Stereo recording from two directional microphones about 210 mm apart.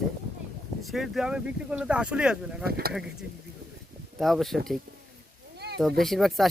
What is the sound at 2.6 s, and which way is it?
Speech, 45° right (ahead or behind).